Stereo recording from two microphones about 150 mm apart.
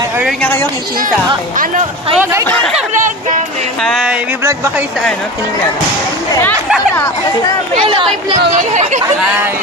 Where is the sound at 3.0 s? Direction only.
60° right (ahead or behind).